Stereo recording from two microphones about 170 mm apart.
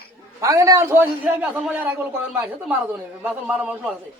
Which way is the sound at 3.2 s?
5° right (ahead or behind).